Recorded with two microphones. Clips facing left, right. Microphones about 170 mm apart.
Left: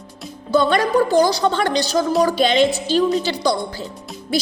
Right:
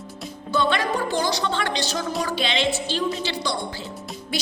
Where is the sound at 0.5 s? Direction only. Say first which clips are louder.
Left 7 dB; 40° left (ahead or behind).